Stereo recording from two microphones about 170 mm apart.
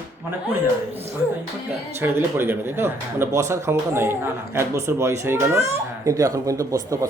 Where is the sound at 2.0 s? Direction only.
15° right (ahead or behind).